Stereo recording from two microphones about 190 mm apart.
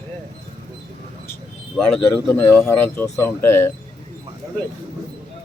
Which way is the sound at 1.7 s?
5° left (ahead or behind).